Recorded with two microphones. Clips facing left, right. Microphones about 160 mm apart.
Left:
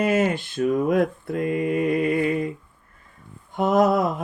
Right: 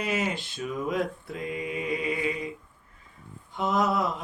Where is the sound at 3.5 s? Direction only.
50° left (ahead or behind).